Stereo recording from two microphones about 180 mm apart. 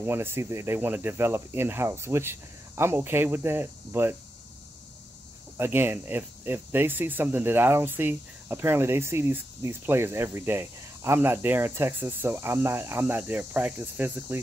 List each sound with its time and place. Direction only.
0.0 s speech: 15° right (ahead or behind)
5.6 s speech: 10° right (ahead or behind)